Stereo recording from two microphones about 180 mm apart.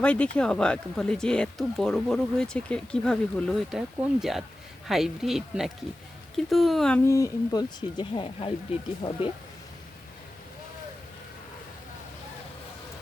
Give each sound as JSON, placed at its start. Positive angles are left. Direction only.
{"t": 0.0, "sound": "speech", "side_deg": 5}
{"t": 7.1, "sound": "speech", "side_deg": 20}